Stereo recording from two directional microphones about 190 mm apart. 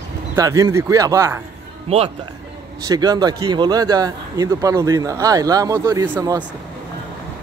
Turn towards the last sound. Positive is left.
turn(degrees=-20)  # may be behind; listen again after turning